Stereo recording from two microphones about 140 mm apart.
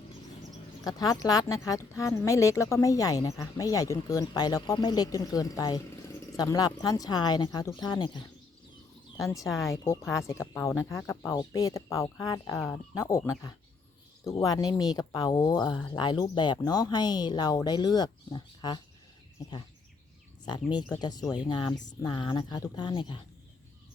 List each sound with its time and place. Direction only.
0.9 s speech: 25° left (ahead or behind)
9.6 s speech: 20° left (ahead or behind)
20.4 s speech: 30° left (ahead or behind)